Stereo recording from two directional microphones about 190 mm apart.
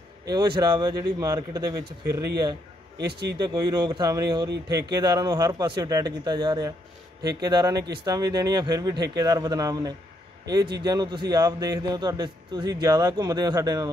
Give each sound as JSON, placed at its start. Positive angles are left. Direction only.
{"t": 0.2, "sound": "a man's voice", "side_deg": -20}